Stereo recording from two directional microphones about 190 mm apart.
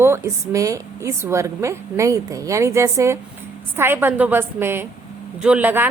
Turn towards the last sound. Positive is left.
turn(degrees=-10)  # may be behind; listen again after turning